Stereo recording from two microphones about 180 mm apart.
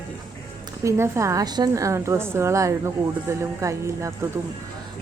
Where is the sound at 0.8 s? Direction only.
15° right (ahead or behind).